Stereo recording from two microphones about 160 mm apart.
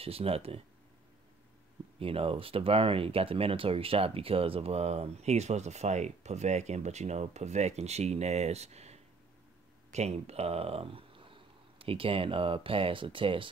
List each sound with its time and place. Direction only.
0.0 s speech: 35° right (ahead or behind)
2.0 s speech: 35° right (ahead or behind)